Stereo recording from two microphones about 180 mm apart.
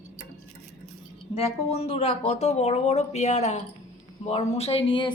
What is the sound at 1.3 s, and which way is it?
A woman's voice, 35° left (ahead or behind).